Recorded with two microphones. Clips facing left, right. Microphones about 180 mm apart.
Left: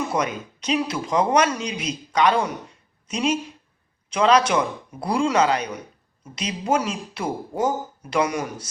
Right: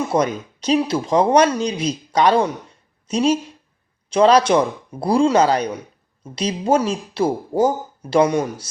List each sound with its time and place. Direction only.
0.1 s speech: 35° right (ahead or behind)